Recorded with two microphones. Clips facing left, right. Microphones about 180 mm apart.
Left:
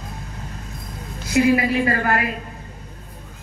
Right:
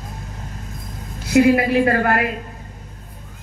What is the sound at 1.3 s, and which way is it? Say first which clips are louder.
Speech: right 3 dB; 60° right (ahead or behind).